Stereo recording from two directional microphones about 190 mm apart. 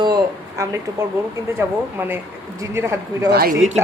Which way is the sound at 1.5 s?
10° right (ahead or behind).